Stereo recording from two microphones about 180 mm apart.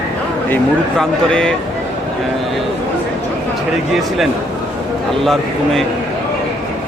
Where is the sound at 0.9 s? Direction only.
5° left (ahead or behind).